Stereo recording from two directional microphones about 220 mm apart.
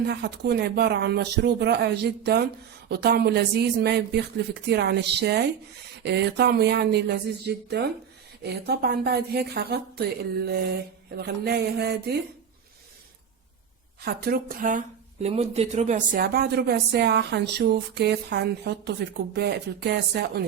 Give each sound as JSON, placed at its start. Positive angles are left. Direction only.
{"t": 0.0, "sound": "speech", "side_deg": -50}
{"t": 14.0, "sound": "speech", "side_deg": -45}